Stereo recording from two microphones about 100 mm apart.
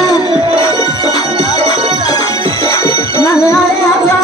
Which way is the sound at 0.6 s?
40° left (ahead or behind).